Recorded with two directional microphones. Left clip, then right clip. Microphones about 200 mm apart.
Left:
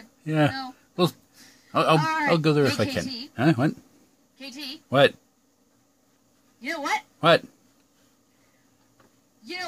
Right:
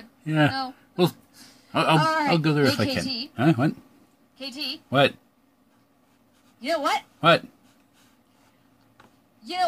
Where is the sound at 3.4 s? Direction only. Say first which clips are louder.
Even; 15° left (ahead or behind).